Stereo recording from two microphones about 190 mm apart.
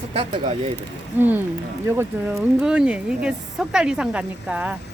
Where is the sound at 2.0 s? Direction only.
5° right (ahead or behind).